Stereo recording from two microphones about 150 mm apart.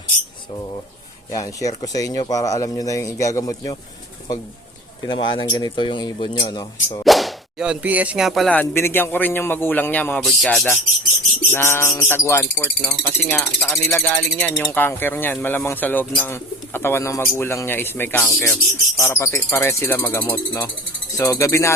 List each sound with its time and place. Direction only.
1.3 s speech: 20° left (ahead or behind)
5.0 s speech: 30° left (ahead or behind)
7.0 s whip: centre (ahead or behind)
11.5 s speech: 15° left (ahead or behind)